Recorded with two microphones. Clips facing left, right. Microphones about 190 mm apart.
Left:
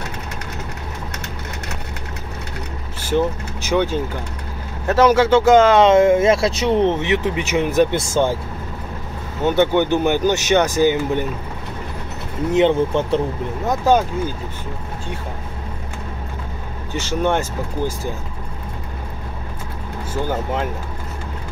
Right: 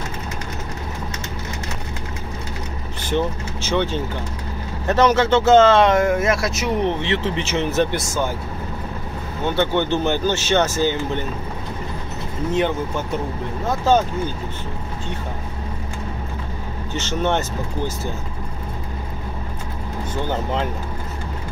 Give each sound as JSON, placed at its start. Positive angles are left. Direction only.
{"t": 3.1, "sound": "speech", "side_deg": 10}
{"t": 7.9, "sound": "speech", "side_deg": 30}
{"t": 9.4, "sound": "speech", "side_deg": 15}
{"t": 12.5, "sound": "speech", "side_deg": 25}
{"t": 13.7, "sound": "speech", "side_deg": 15}
{"t": 16.9, "sound": "speech", "side_deg": 10}